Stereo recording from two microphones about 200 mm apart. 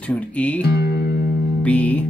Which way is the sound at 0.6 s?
55° left (ahead or behind).